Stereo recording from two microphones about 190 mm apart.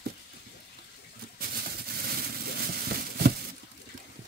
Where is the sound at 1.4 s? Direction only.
55° right (ahead or behind).